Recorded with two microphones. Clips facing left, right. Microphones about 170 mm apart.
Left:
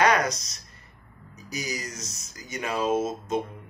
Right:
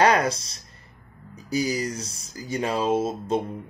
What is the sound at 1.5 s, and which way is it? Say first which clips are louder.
Speech: right 9 dB; 30° right (ahead or behind).